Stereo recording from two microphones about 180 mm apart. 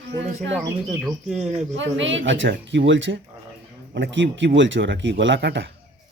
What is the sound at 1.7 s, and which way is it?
Speech, 90° right.